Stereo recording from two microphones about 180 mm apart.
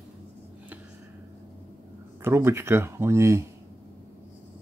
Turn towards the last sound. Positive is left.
turn(degrees=-15)  # may be behind; listen again after turning